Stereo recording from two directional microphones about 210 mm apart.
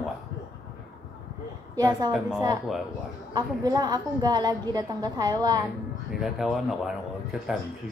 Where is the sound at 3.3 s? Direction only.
20° right (ahead or behind).